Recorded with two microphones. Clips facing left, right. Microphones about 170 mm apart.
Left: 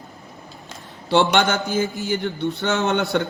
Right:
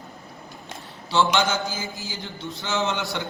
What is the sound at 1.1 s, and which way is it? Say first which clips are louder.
A man's voice: left 4 dB; 60° left (ahead or behind).